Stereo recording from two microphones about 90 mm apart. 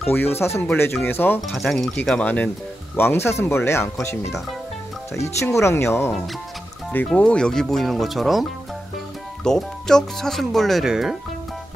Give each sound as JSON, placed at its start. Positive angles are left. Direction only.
{"t": 0.1, "sound": "speech", "side_deg": 25}
{"t": 1.5, "sound": "speech", "side_deg": 0}
{"t": 2.0, "sound": "speech", "side_deg": 15}
{"t": 3.0, "sound": "speech", "side_deg": 25}
{"t": 7.2, "sound": "speech", "side_deg": 10}